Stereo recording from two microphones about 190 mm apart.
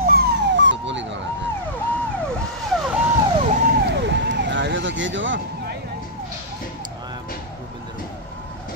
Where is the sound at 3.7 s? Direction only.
60° right (ahead or behind); by 5.7 s 75° right (ahead or behind).